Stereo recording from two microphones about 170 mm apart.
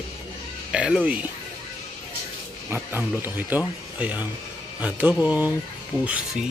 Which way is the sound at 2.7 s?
10° right (ahead or behind).